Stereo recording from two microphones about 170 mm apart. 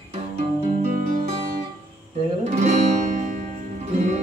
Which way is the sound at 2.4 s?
45° right (ahead or behind).